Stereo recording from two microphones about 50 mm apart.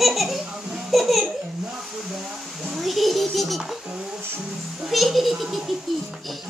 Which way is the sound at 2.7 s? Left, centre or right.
Centre.